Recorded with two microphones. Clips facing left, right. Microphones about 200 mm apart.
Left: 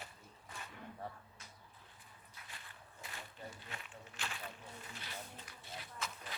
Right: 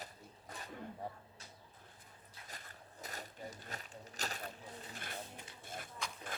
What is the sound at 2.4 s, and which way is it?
Walk, 40° right (ahead or behind).